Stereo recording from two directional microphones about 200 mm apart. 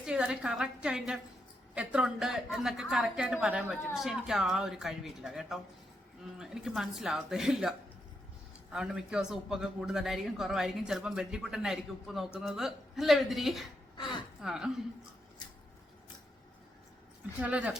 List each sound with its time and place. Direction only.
0.0 s a man's voice: 5° right (ahead or behind)
8.7 s a man's voice: 5° right (ahead or behind)
13.9 s speech: 25° left (ahead or behind)
14.4 s a man's voice: 5° right (ahead or behind)
17.4 s speech: 5° right (ahead or behind)